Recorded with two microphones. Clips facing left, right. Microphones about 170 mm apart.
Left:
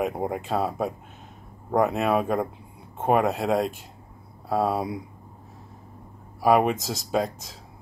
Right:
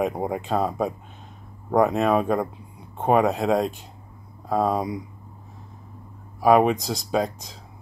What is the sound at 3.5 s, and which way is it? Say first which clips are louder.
Speech: right 2 dB; 40° right (ahead or behind).